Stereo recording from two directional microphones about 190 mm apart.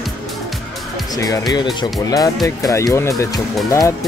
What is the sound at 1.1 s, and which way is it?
Speech, 20° left (ahead or behind).